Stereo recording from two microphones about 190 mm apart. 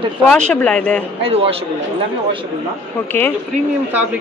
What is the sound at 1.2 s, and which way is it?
Speech, 30° right (ahead or behind).